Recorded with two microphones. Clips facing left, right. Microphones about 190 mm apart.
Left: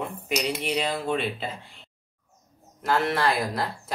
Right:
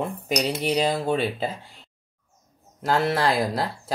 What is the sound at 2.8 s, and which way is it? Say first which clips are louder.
Speech: right 2 dB; 35° right (ahead or behind).